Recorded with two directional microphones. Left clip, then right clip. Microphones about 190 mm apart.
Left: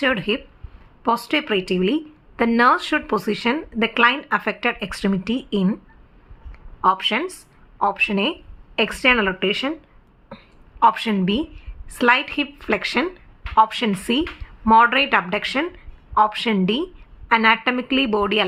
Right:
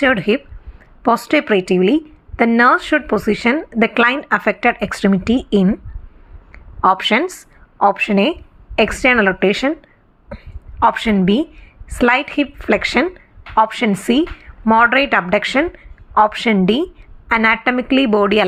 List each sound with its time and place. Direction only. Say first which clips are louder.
0.0 s a woman's voice: right 6 dB; 20° right (ahead or behind)
10.2 s a woman's voice: right 6 dB; 15° right (ahead or behind)